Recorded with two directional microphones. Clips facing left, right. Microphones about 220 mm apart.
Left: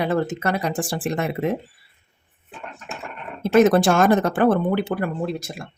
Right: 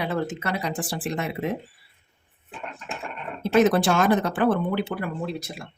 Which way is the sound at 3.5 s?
50° left (ahead or behind).